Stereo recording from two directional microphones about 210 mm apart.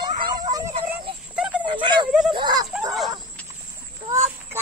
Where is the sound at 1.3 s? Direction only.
5° right (ahead or behind).